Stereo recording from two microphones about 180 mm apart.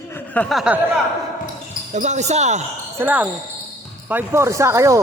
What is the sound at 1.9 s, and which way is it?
Speech, 40° right (ahead or behind).